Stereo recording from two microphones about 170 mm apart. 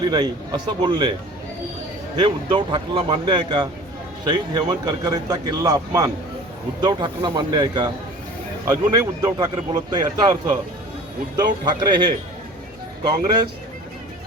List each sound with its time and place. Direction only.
0.1 s a man's voice: 25° right (ahead or behind)
2.1 s a man's voice: 25° right (ahead or behind)
11.3 s a man's voice: 25° right (ahead or behind)